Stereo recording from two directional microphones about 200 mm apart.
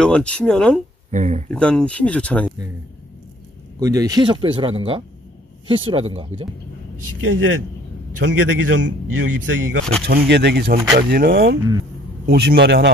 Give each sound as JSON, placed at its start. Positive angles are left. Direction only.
{"t": 0.0, "sound": "speech", "side_deg": 5}
{"t": 1.1, "sound": "speech", "side_deg": -35}
{"t": 1.5, "sound": "speech", "side_deg": 5}
{"t": 3.8, "sound": "speech", "side_deg": -15}
{"t": 7.2, "sound": "speech", "side_deg": -90}
{"t": 8.2, "sound": "speech", "side_deg": -65}
{"t": 10.0, "sound": "speech", "side_deg": -55}